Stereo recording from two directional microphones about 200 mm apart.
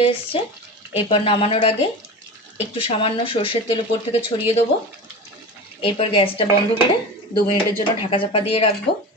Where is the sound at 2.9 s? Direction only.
30° left (ahead or behind).